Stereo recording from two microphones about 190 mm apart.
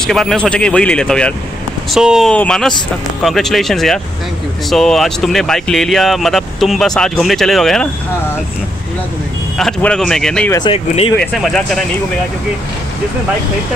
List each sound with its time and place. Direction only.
0.0 s speech: centre (ahead or behind)
9.6 s speech: 5° left (ahead or behind)
10.7 s speech: 30° left (ahead or behind)
11.1 s speech: 5° left (ahead or behind)